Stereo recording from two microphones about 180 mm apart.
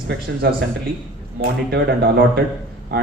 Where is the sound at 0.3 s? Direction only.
80° right.